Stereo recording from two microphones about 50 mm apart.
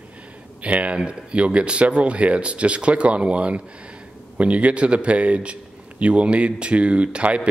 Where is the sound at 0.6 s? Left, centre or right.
Right.